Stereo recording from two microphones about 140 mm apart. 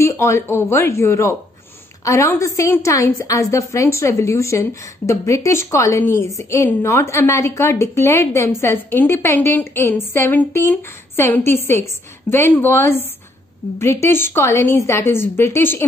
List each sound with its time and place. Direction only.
0.0 s a woman's voice: 20° left (ahead or behind)